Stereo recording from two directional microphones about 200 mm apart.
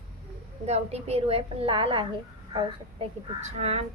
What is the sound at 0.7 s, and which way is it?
A woman's voice, 30° right (ahead or behind).